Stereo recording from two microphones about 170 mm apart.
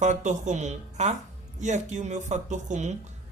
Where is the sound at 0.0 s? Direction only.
45° right (ahead or behind).